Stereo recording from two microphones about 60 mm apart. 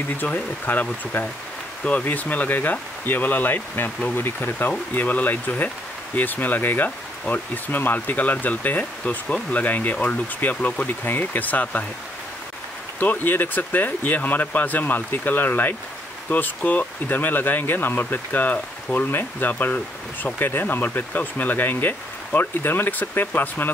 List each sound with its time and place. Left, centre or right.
0.2 s speech: left
13.0 s speech: left